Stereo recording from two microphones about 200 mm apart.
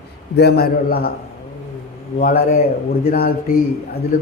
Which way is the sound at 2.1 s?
45° left (ahead or behind).